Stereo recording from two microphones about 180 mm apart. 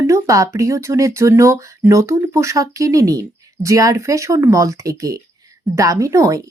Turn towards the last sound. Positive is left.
turn(degrees=-20)  # may be behind; listen again after turning